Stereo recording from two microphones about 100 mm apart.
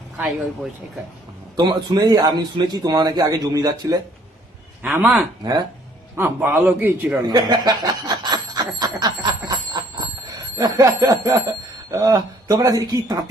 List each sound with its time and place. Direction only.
0.2 s speech: 5° right (ahead or behind)
1.5 s a man's voice: 45° right (ahead or behind)
4.9 s speech: 5° right (ahead or behind)
5.4 s speech: 40° right (ahead or behind)
6.1 s a man's voice: 20° right (ahead or behind)
7.3 s snicker: 45° right (ahead or behind)